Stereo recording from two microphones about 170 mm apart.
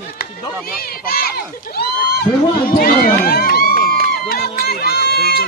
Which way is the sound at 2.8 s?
60° left (ahead or behind).